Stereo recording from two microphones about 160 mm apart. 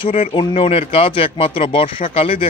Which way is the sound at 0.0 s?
35° left (ahead or behind).